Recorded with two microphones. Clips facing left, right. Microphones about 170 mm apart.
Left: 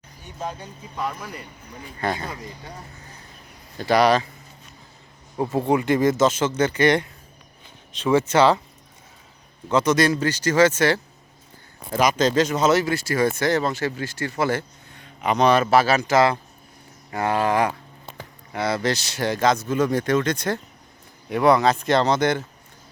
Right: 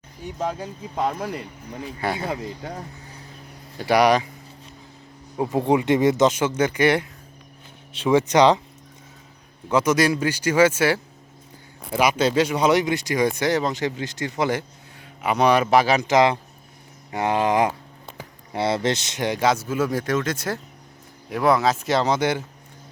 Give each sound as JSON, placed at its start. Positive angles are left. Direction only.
{"t": 2.0, "sound": "speech", "side_deg": -10}
{"t": 3.8, "sound": "speech", "side_deg": -10}
{"t": 5.4, "sound": "speech", "side_deg": -15}
{"t": 9.6, "sound": "speech", "side_deg": -10}
{"t": 14.9, "sound": "speech", "side_deg": -5}